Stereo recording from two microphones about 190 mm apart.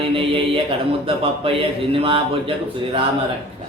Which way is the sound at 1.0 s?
30° right (ahead or behind).